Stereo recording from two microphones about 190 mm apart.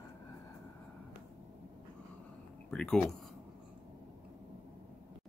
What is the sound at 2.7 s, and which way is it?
Speech, 5° left (ahead or behind).